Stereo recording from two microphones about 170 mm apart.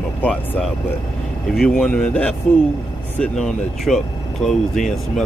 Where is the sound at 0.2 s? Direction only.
5° left (ahead or behind).